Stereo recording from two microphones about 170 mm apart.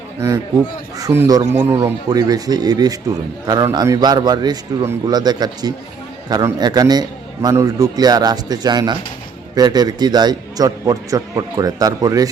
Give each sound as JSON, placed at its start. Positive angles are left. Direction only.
{"t": 0.9, "sound": "a man's voice", "side_deg": -15}